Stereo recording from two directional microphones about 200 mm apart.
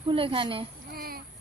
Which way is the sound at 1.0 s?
50° right (ahead or behind).